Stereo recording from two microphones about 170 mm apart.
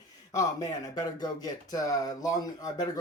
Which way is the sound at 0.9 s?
25° left (ahead or behind).